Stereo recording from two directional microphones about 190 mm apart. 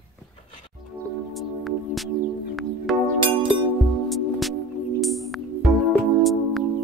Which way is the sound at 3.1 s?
25° right (ahead or behind).